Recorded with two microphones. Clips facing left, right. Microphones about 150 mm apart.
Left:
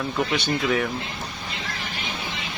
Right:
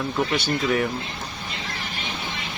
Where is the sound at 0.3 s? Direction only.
Centre (ahead or behind).